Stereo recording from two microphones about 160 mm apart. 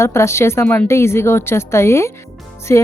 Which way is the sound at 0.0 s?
15° left (ahead or behind).